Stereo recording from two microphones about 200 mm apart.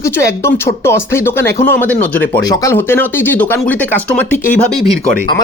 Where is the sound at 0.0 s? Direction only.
15° left (ahead or behind).